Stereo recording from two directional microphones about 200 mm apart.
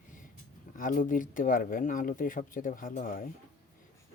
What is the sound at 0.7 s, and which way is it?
Speech, 40° left (ahead or behind).